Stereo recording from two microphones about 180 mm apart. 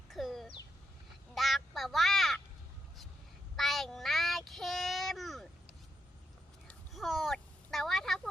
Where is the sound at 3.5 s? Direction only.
Centre (ahead or behind).